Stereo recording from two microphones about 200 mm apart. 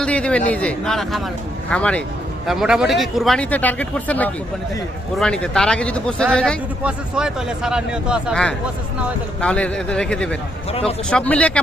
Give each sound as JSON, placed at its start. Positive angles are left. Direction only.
{"t": 0.0, "sound": "a man's voice", "side_deg": 5}
{"t": 10.7, "sound": "a man's voice", "side_deg": 30}
{"t": 11.1, "sound": "speech", "side_deg": 5}